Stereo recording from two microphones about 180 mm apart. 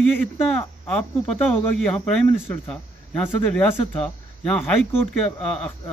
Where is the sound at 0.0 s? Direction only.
Centre (ahead or behind).